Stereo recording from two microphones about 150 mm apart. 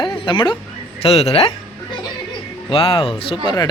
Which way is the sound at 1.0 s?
45° left (ahead or behind).